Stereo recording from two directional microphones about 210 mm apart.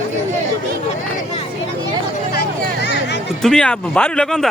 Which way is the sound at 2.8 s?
55° left (ahead or behind).